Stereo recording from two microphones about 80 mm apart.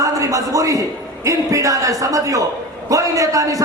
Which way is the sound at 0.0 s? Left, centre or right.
Right.